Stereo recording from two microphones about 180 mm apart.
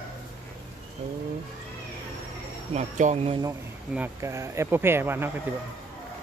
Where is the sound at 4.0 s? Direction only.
15° right (ahead or behind).